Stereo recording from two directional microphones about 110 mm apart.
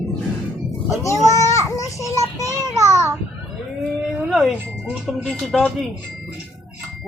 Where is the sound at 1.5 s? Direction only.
30° left (ahead or behind).